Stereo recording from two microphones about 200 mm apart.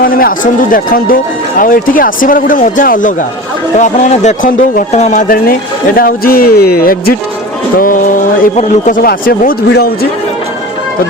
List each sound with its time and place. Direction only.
0.0 s a man's voice: 45° left (ahead or behind)